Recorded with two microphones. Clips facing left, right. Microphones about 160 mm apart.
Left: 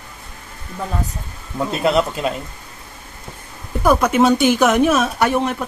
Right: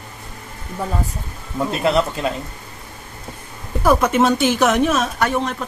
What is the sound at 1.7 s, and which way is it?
Speech, 15° left (ahead or behind).